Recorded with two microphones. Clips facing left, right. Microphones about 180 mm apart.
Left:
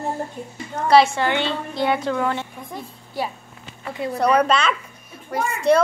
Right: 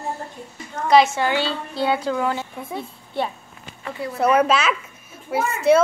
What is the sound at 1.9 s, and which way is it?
A woman's voice, 10° right (ahead or behind).